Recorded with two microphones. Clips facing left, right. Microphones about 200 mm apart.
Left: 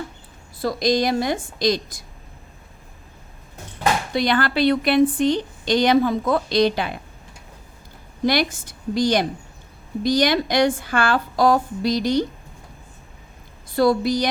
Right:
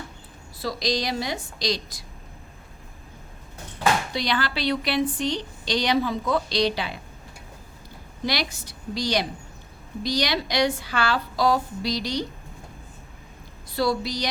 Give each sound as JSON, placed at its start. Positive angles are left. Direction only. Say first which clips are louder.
{"t": 0.6, "sound": "a woman's voice", "louder": "left 7 dB", "side_deg": 50}
{"t": 4.1, "sound": "a woman's voice", "louder": "left 6 dB", "side_deg": 50}
{"t": 8.2, "sound": "a woman's voice", "louder": "left 8 dB", "side_deg": 50}
{"t": 13.7, "sound": "a woman's voice", "louder": "left 7 dB", "side_deg": 50}